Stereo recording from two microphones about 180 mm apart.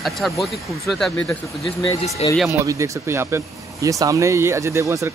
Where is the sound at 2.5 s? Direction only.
15° right (ahead or behind).